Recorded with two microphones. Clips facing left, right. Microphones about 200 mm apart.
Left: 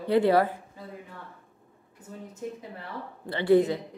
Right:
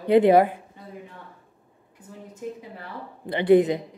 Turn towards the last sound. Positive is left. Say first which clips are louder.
# right 4 dB
turn(degrees=-20)  # may be behind; listen again after turning